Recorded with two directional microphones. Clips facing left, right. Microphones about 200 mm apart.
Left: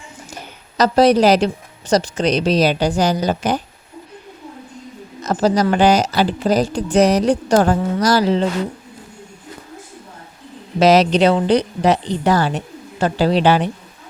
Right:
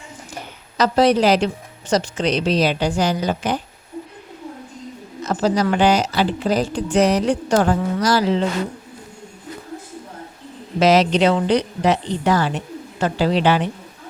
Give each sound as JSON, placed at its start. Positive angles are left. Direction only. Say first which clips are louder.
{"t": 0.8, "sound": "speech", "louder": "left 3 dB", "side_deg": 40}
{"t": 5.2, "sound": "a sound", "louder": "left 3 dB", "side_deg": 40}
{"t": 5.7, "sound": "speech", "louder": "left 2 dB", "side_deg": 40}
{"t": 10.8, "sound": "speech", "louder": "left 2 dB", "side_deg": 35}